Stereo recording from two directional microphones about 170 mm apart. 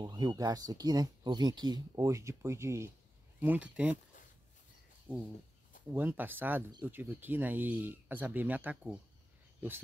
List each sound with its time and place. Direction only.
0.0 s speech: 25° right (ahead or behind); by 4.0 s 10° right (ahead or behind)
5.1 s speech: 10° right (ahead or behind)